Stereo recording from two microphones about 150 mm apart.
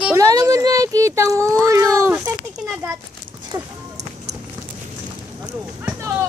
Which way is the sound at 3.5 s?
25° right (ahead or behind).